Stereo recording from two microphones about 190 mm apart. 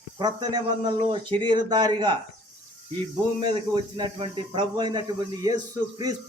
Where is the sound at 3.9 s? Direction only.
25° right (ahead or behind).